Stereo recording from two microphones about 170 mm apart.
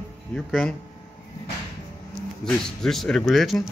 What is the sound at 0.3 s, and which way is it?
Speech, 5° left (ahead or behind).